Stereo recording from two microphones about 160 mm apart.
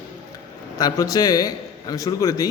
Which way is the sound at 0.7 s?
25° left (ahead or behind).